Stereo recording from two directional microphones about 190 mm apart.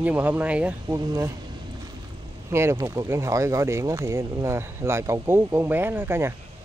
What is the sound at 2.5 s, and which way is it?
Speech, 15° right (ahead or behind).